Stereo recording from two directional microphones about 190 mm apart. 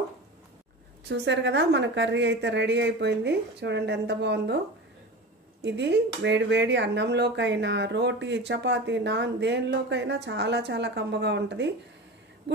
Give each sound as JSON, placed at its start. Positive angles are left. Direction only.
{"t": 1.0, "sound": "speech", "side_deg": -65}
{"t": 5.6, "sound": "speech", "side_deg": -65}